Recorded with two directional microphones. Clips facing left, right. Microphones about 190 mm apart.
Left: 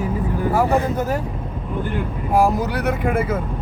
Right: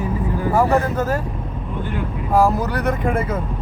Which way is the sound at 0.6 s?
10° left (ahead or behind).